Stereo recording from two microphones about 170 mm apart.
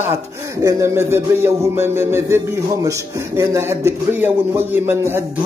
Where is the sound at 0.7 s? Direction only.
15° right (ahead or behind).